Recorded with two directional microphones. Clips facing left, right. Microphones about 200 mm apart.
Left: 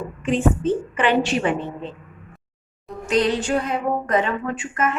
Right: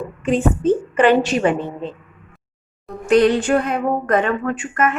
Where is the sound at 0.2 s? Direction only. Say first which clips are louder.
Right 2 dB; 40° right (ahead or behind).